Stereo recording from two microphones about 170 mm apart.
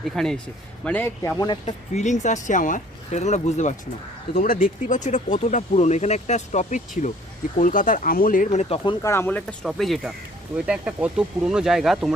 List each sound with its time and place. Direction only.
0.0 s speech: centre (ahead or behind)
0.9 s speech: 15° left (ahead or behind)
1.6 s speech: 45° left (ahead or behind)
8.8 s speech: 25° left (ahead or behind)
9.1 s speech: 10° left (ahead or behind)
9.6 s speech: centre (ahead or behind)